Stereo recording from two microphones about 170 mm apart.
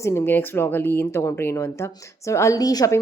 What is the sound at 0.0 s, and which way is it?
A woman's voice, 15° left (ahead or behind).